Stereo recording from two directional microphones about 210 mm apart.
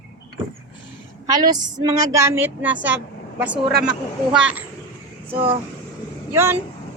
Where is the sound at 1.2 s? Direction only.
20° right (ahead or behind).